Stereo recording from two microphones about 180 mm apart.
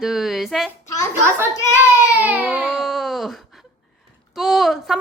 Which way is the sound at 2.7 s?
Centre (ahead or behind).